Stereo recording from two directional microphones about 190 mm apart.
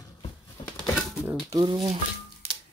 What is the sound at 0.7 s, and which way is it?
Bird, centre (ahead or behind).